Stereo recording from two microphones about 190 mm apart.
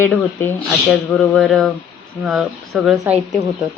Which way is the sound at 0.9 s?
5° left (ahead or behind).